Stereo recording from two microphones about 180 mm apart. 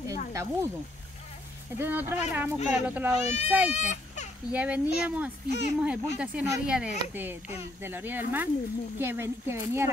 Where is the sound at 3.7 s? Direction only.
40° left (ahead or behind).